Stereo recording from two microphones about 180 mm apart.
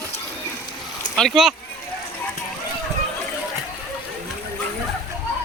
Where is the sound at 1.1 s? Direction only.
Centre (ahead or behind).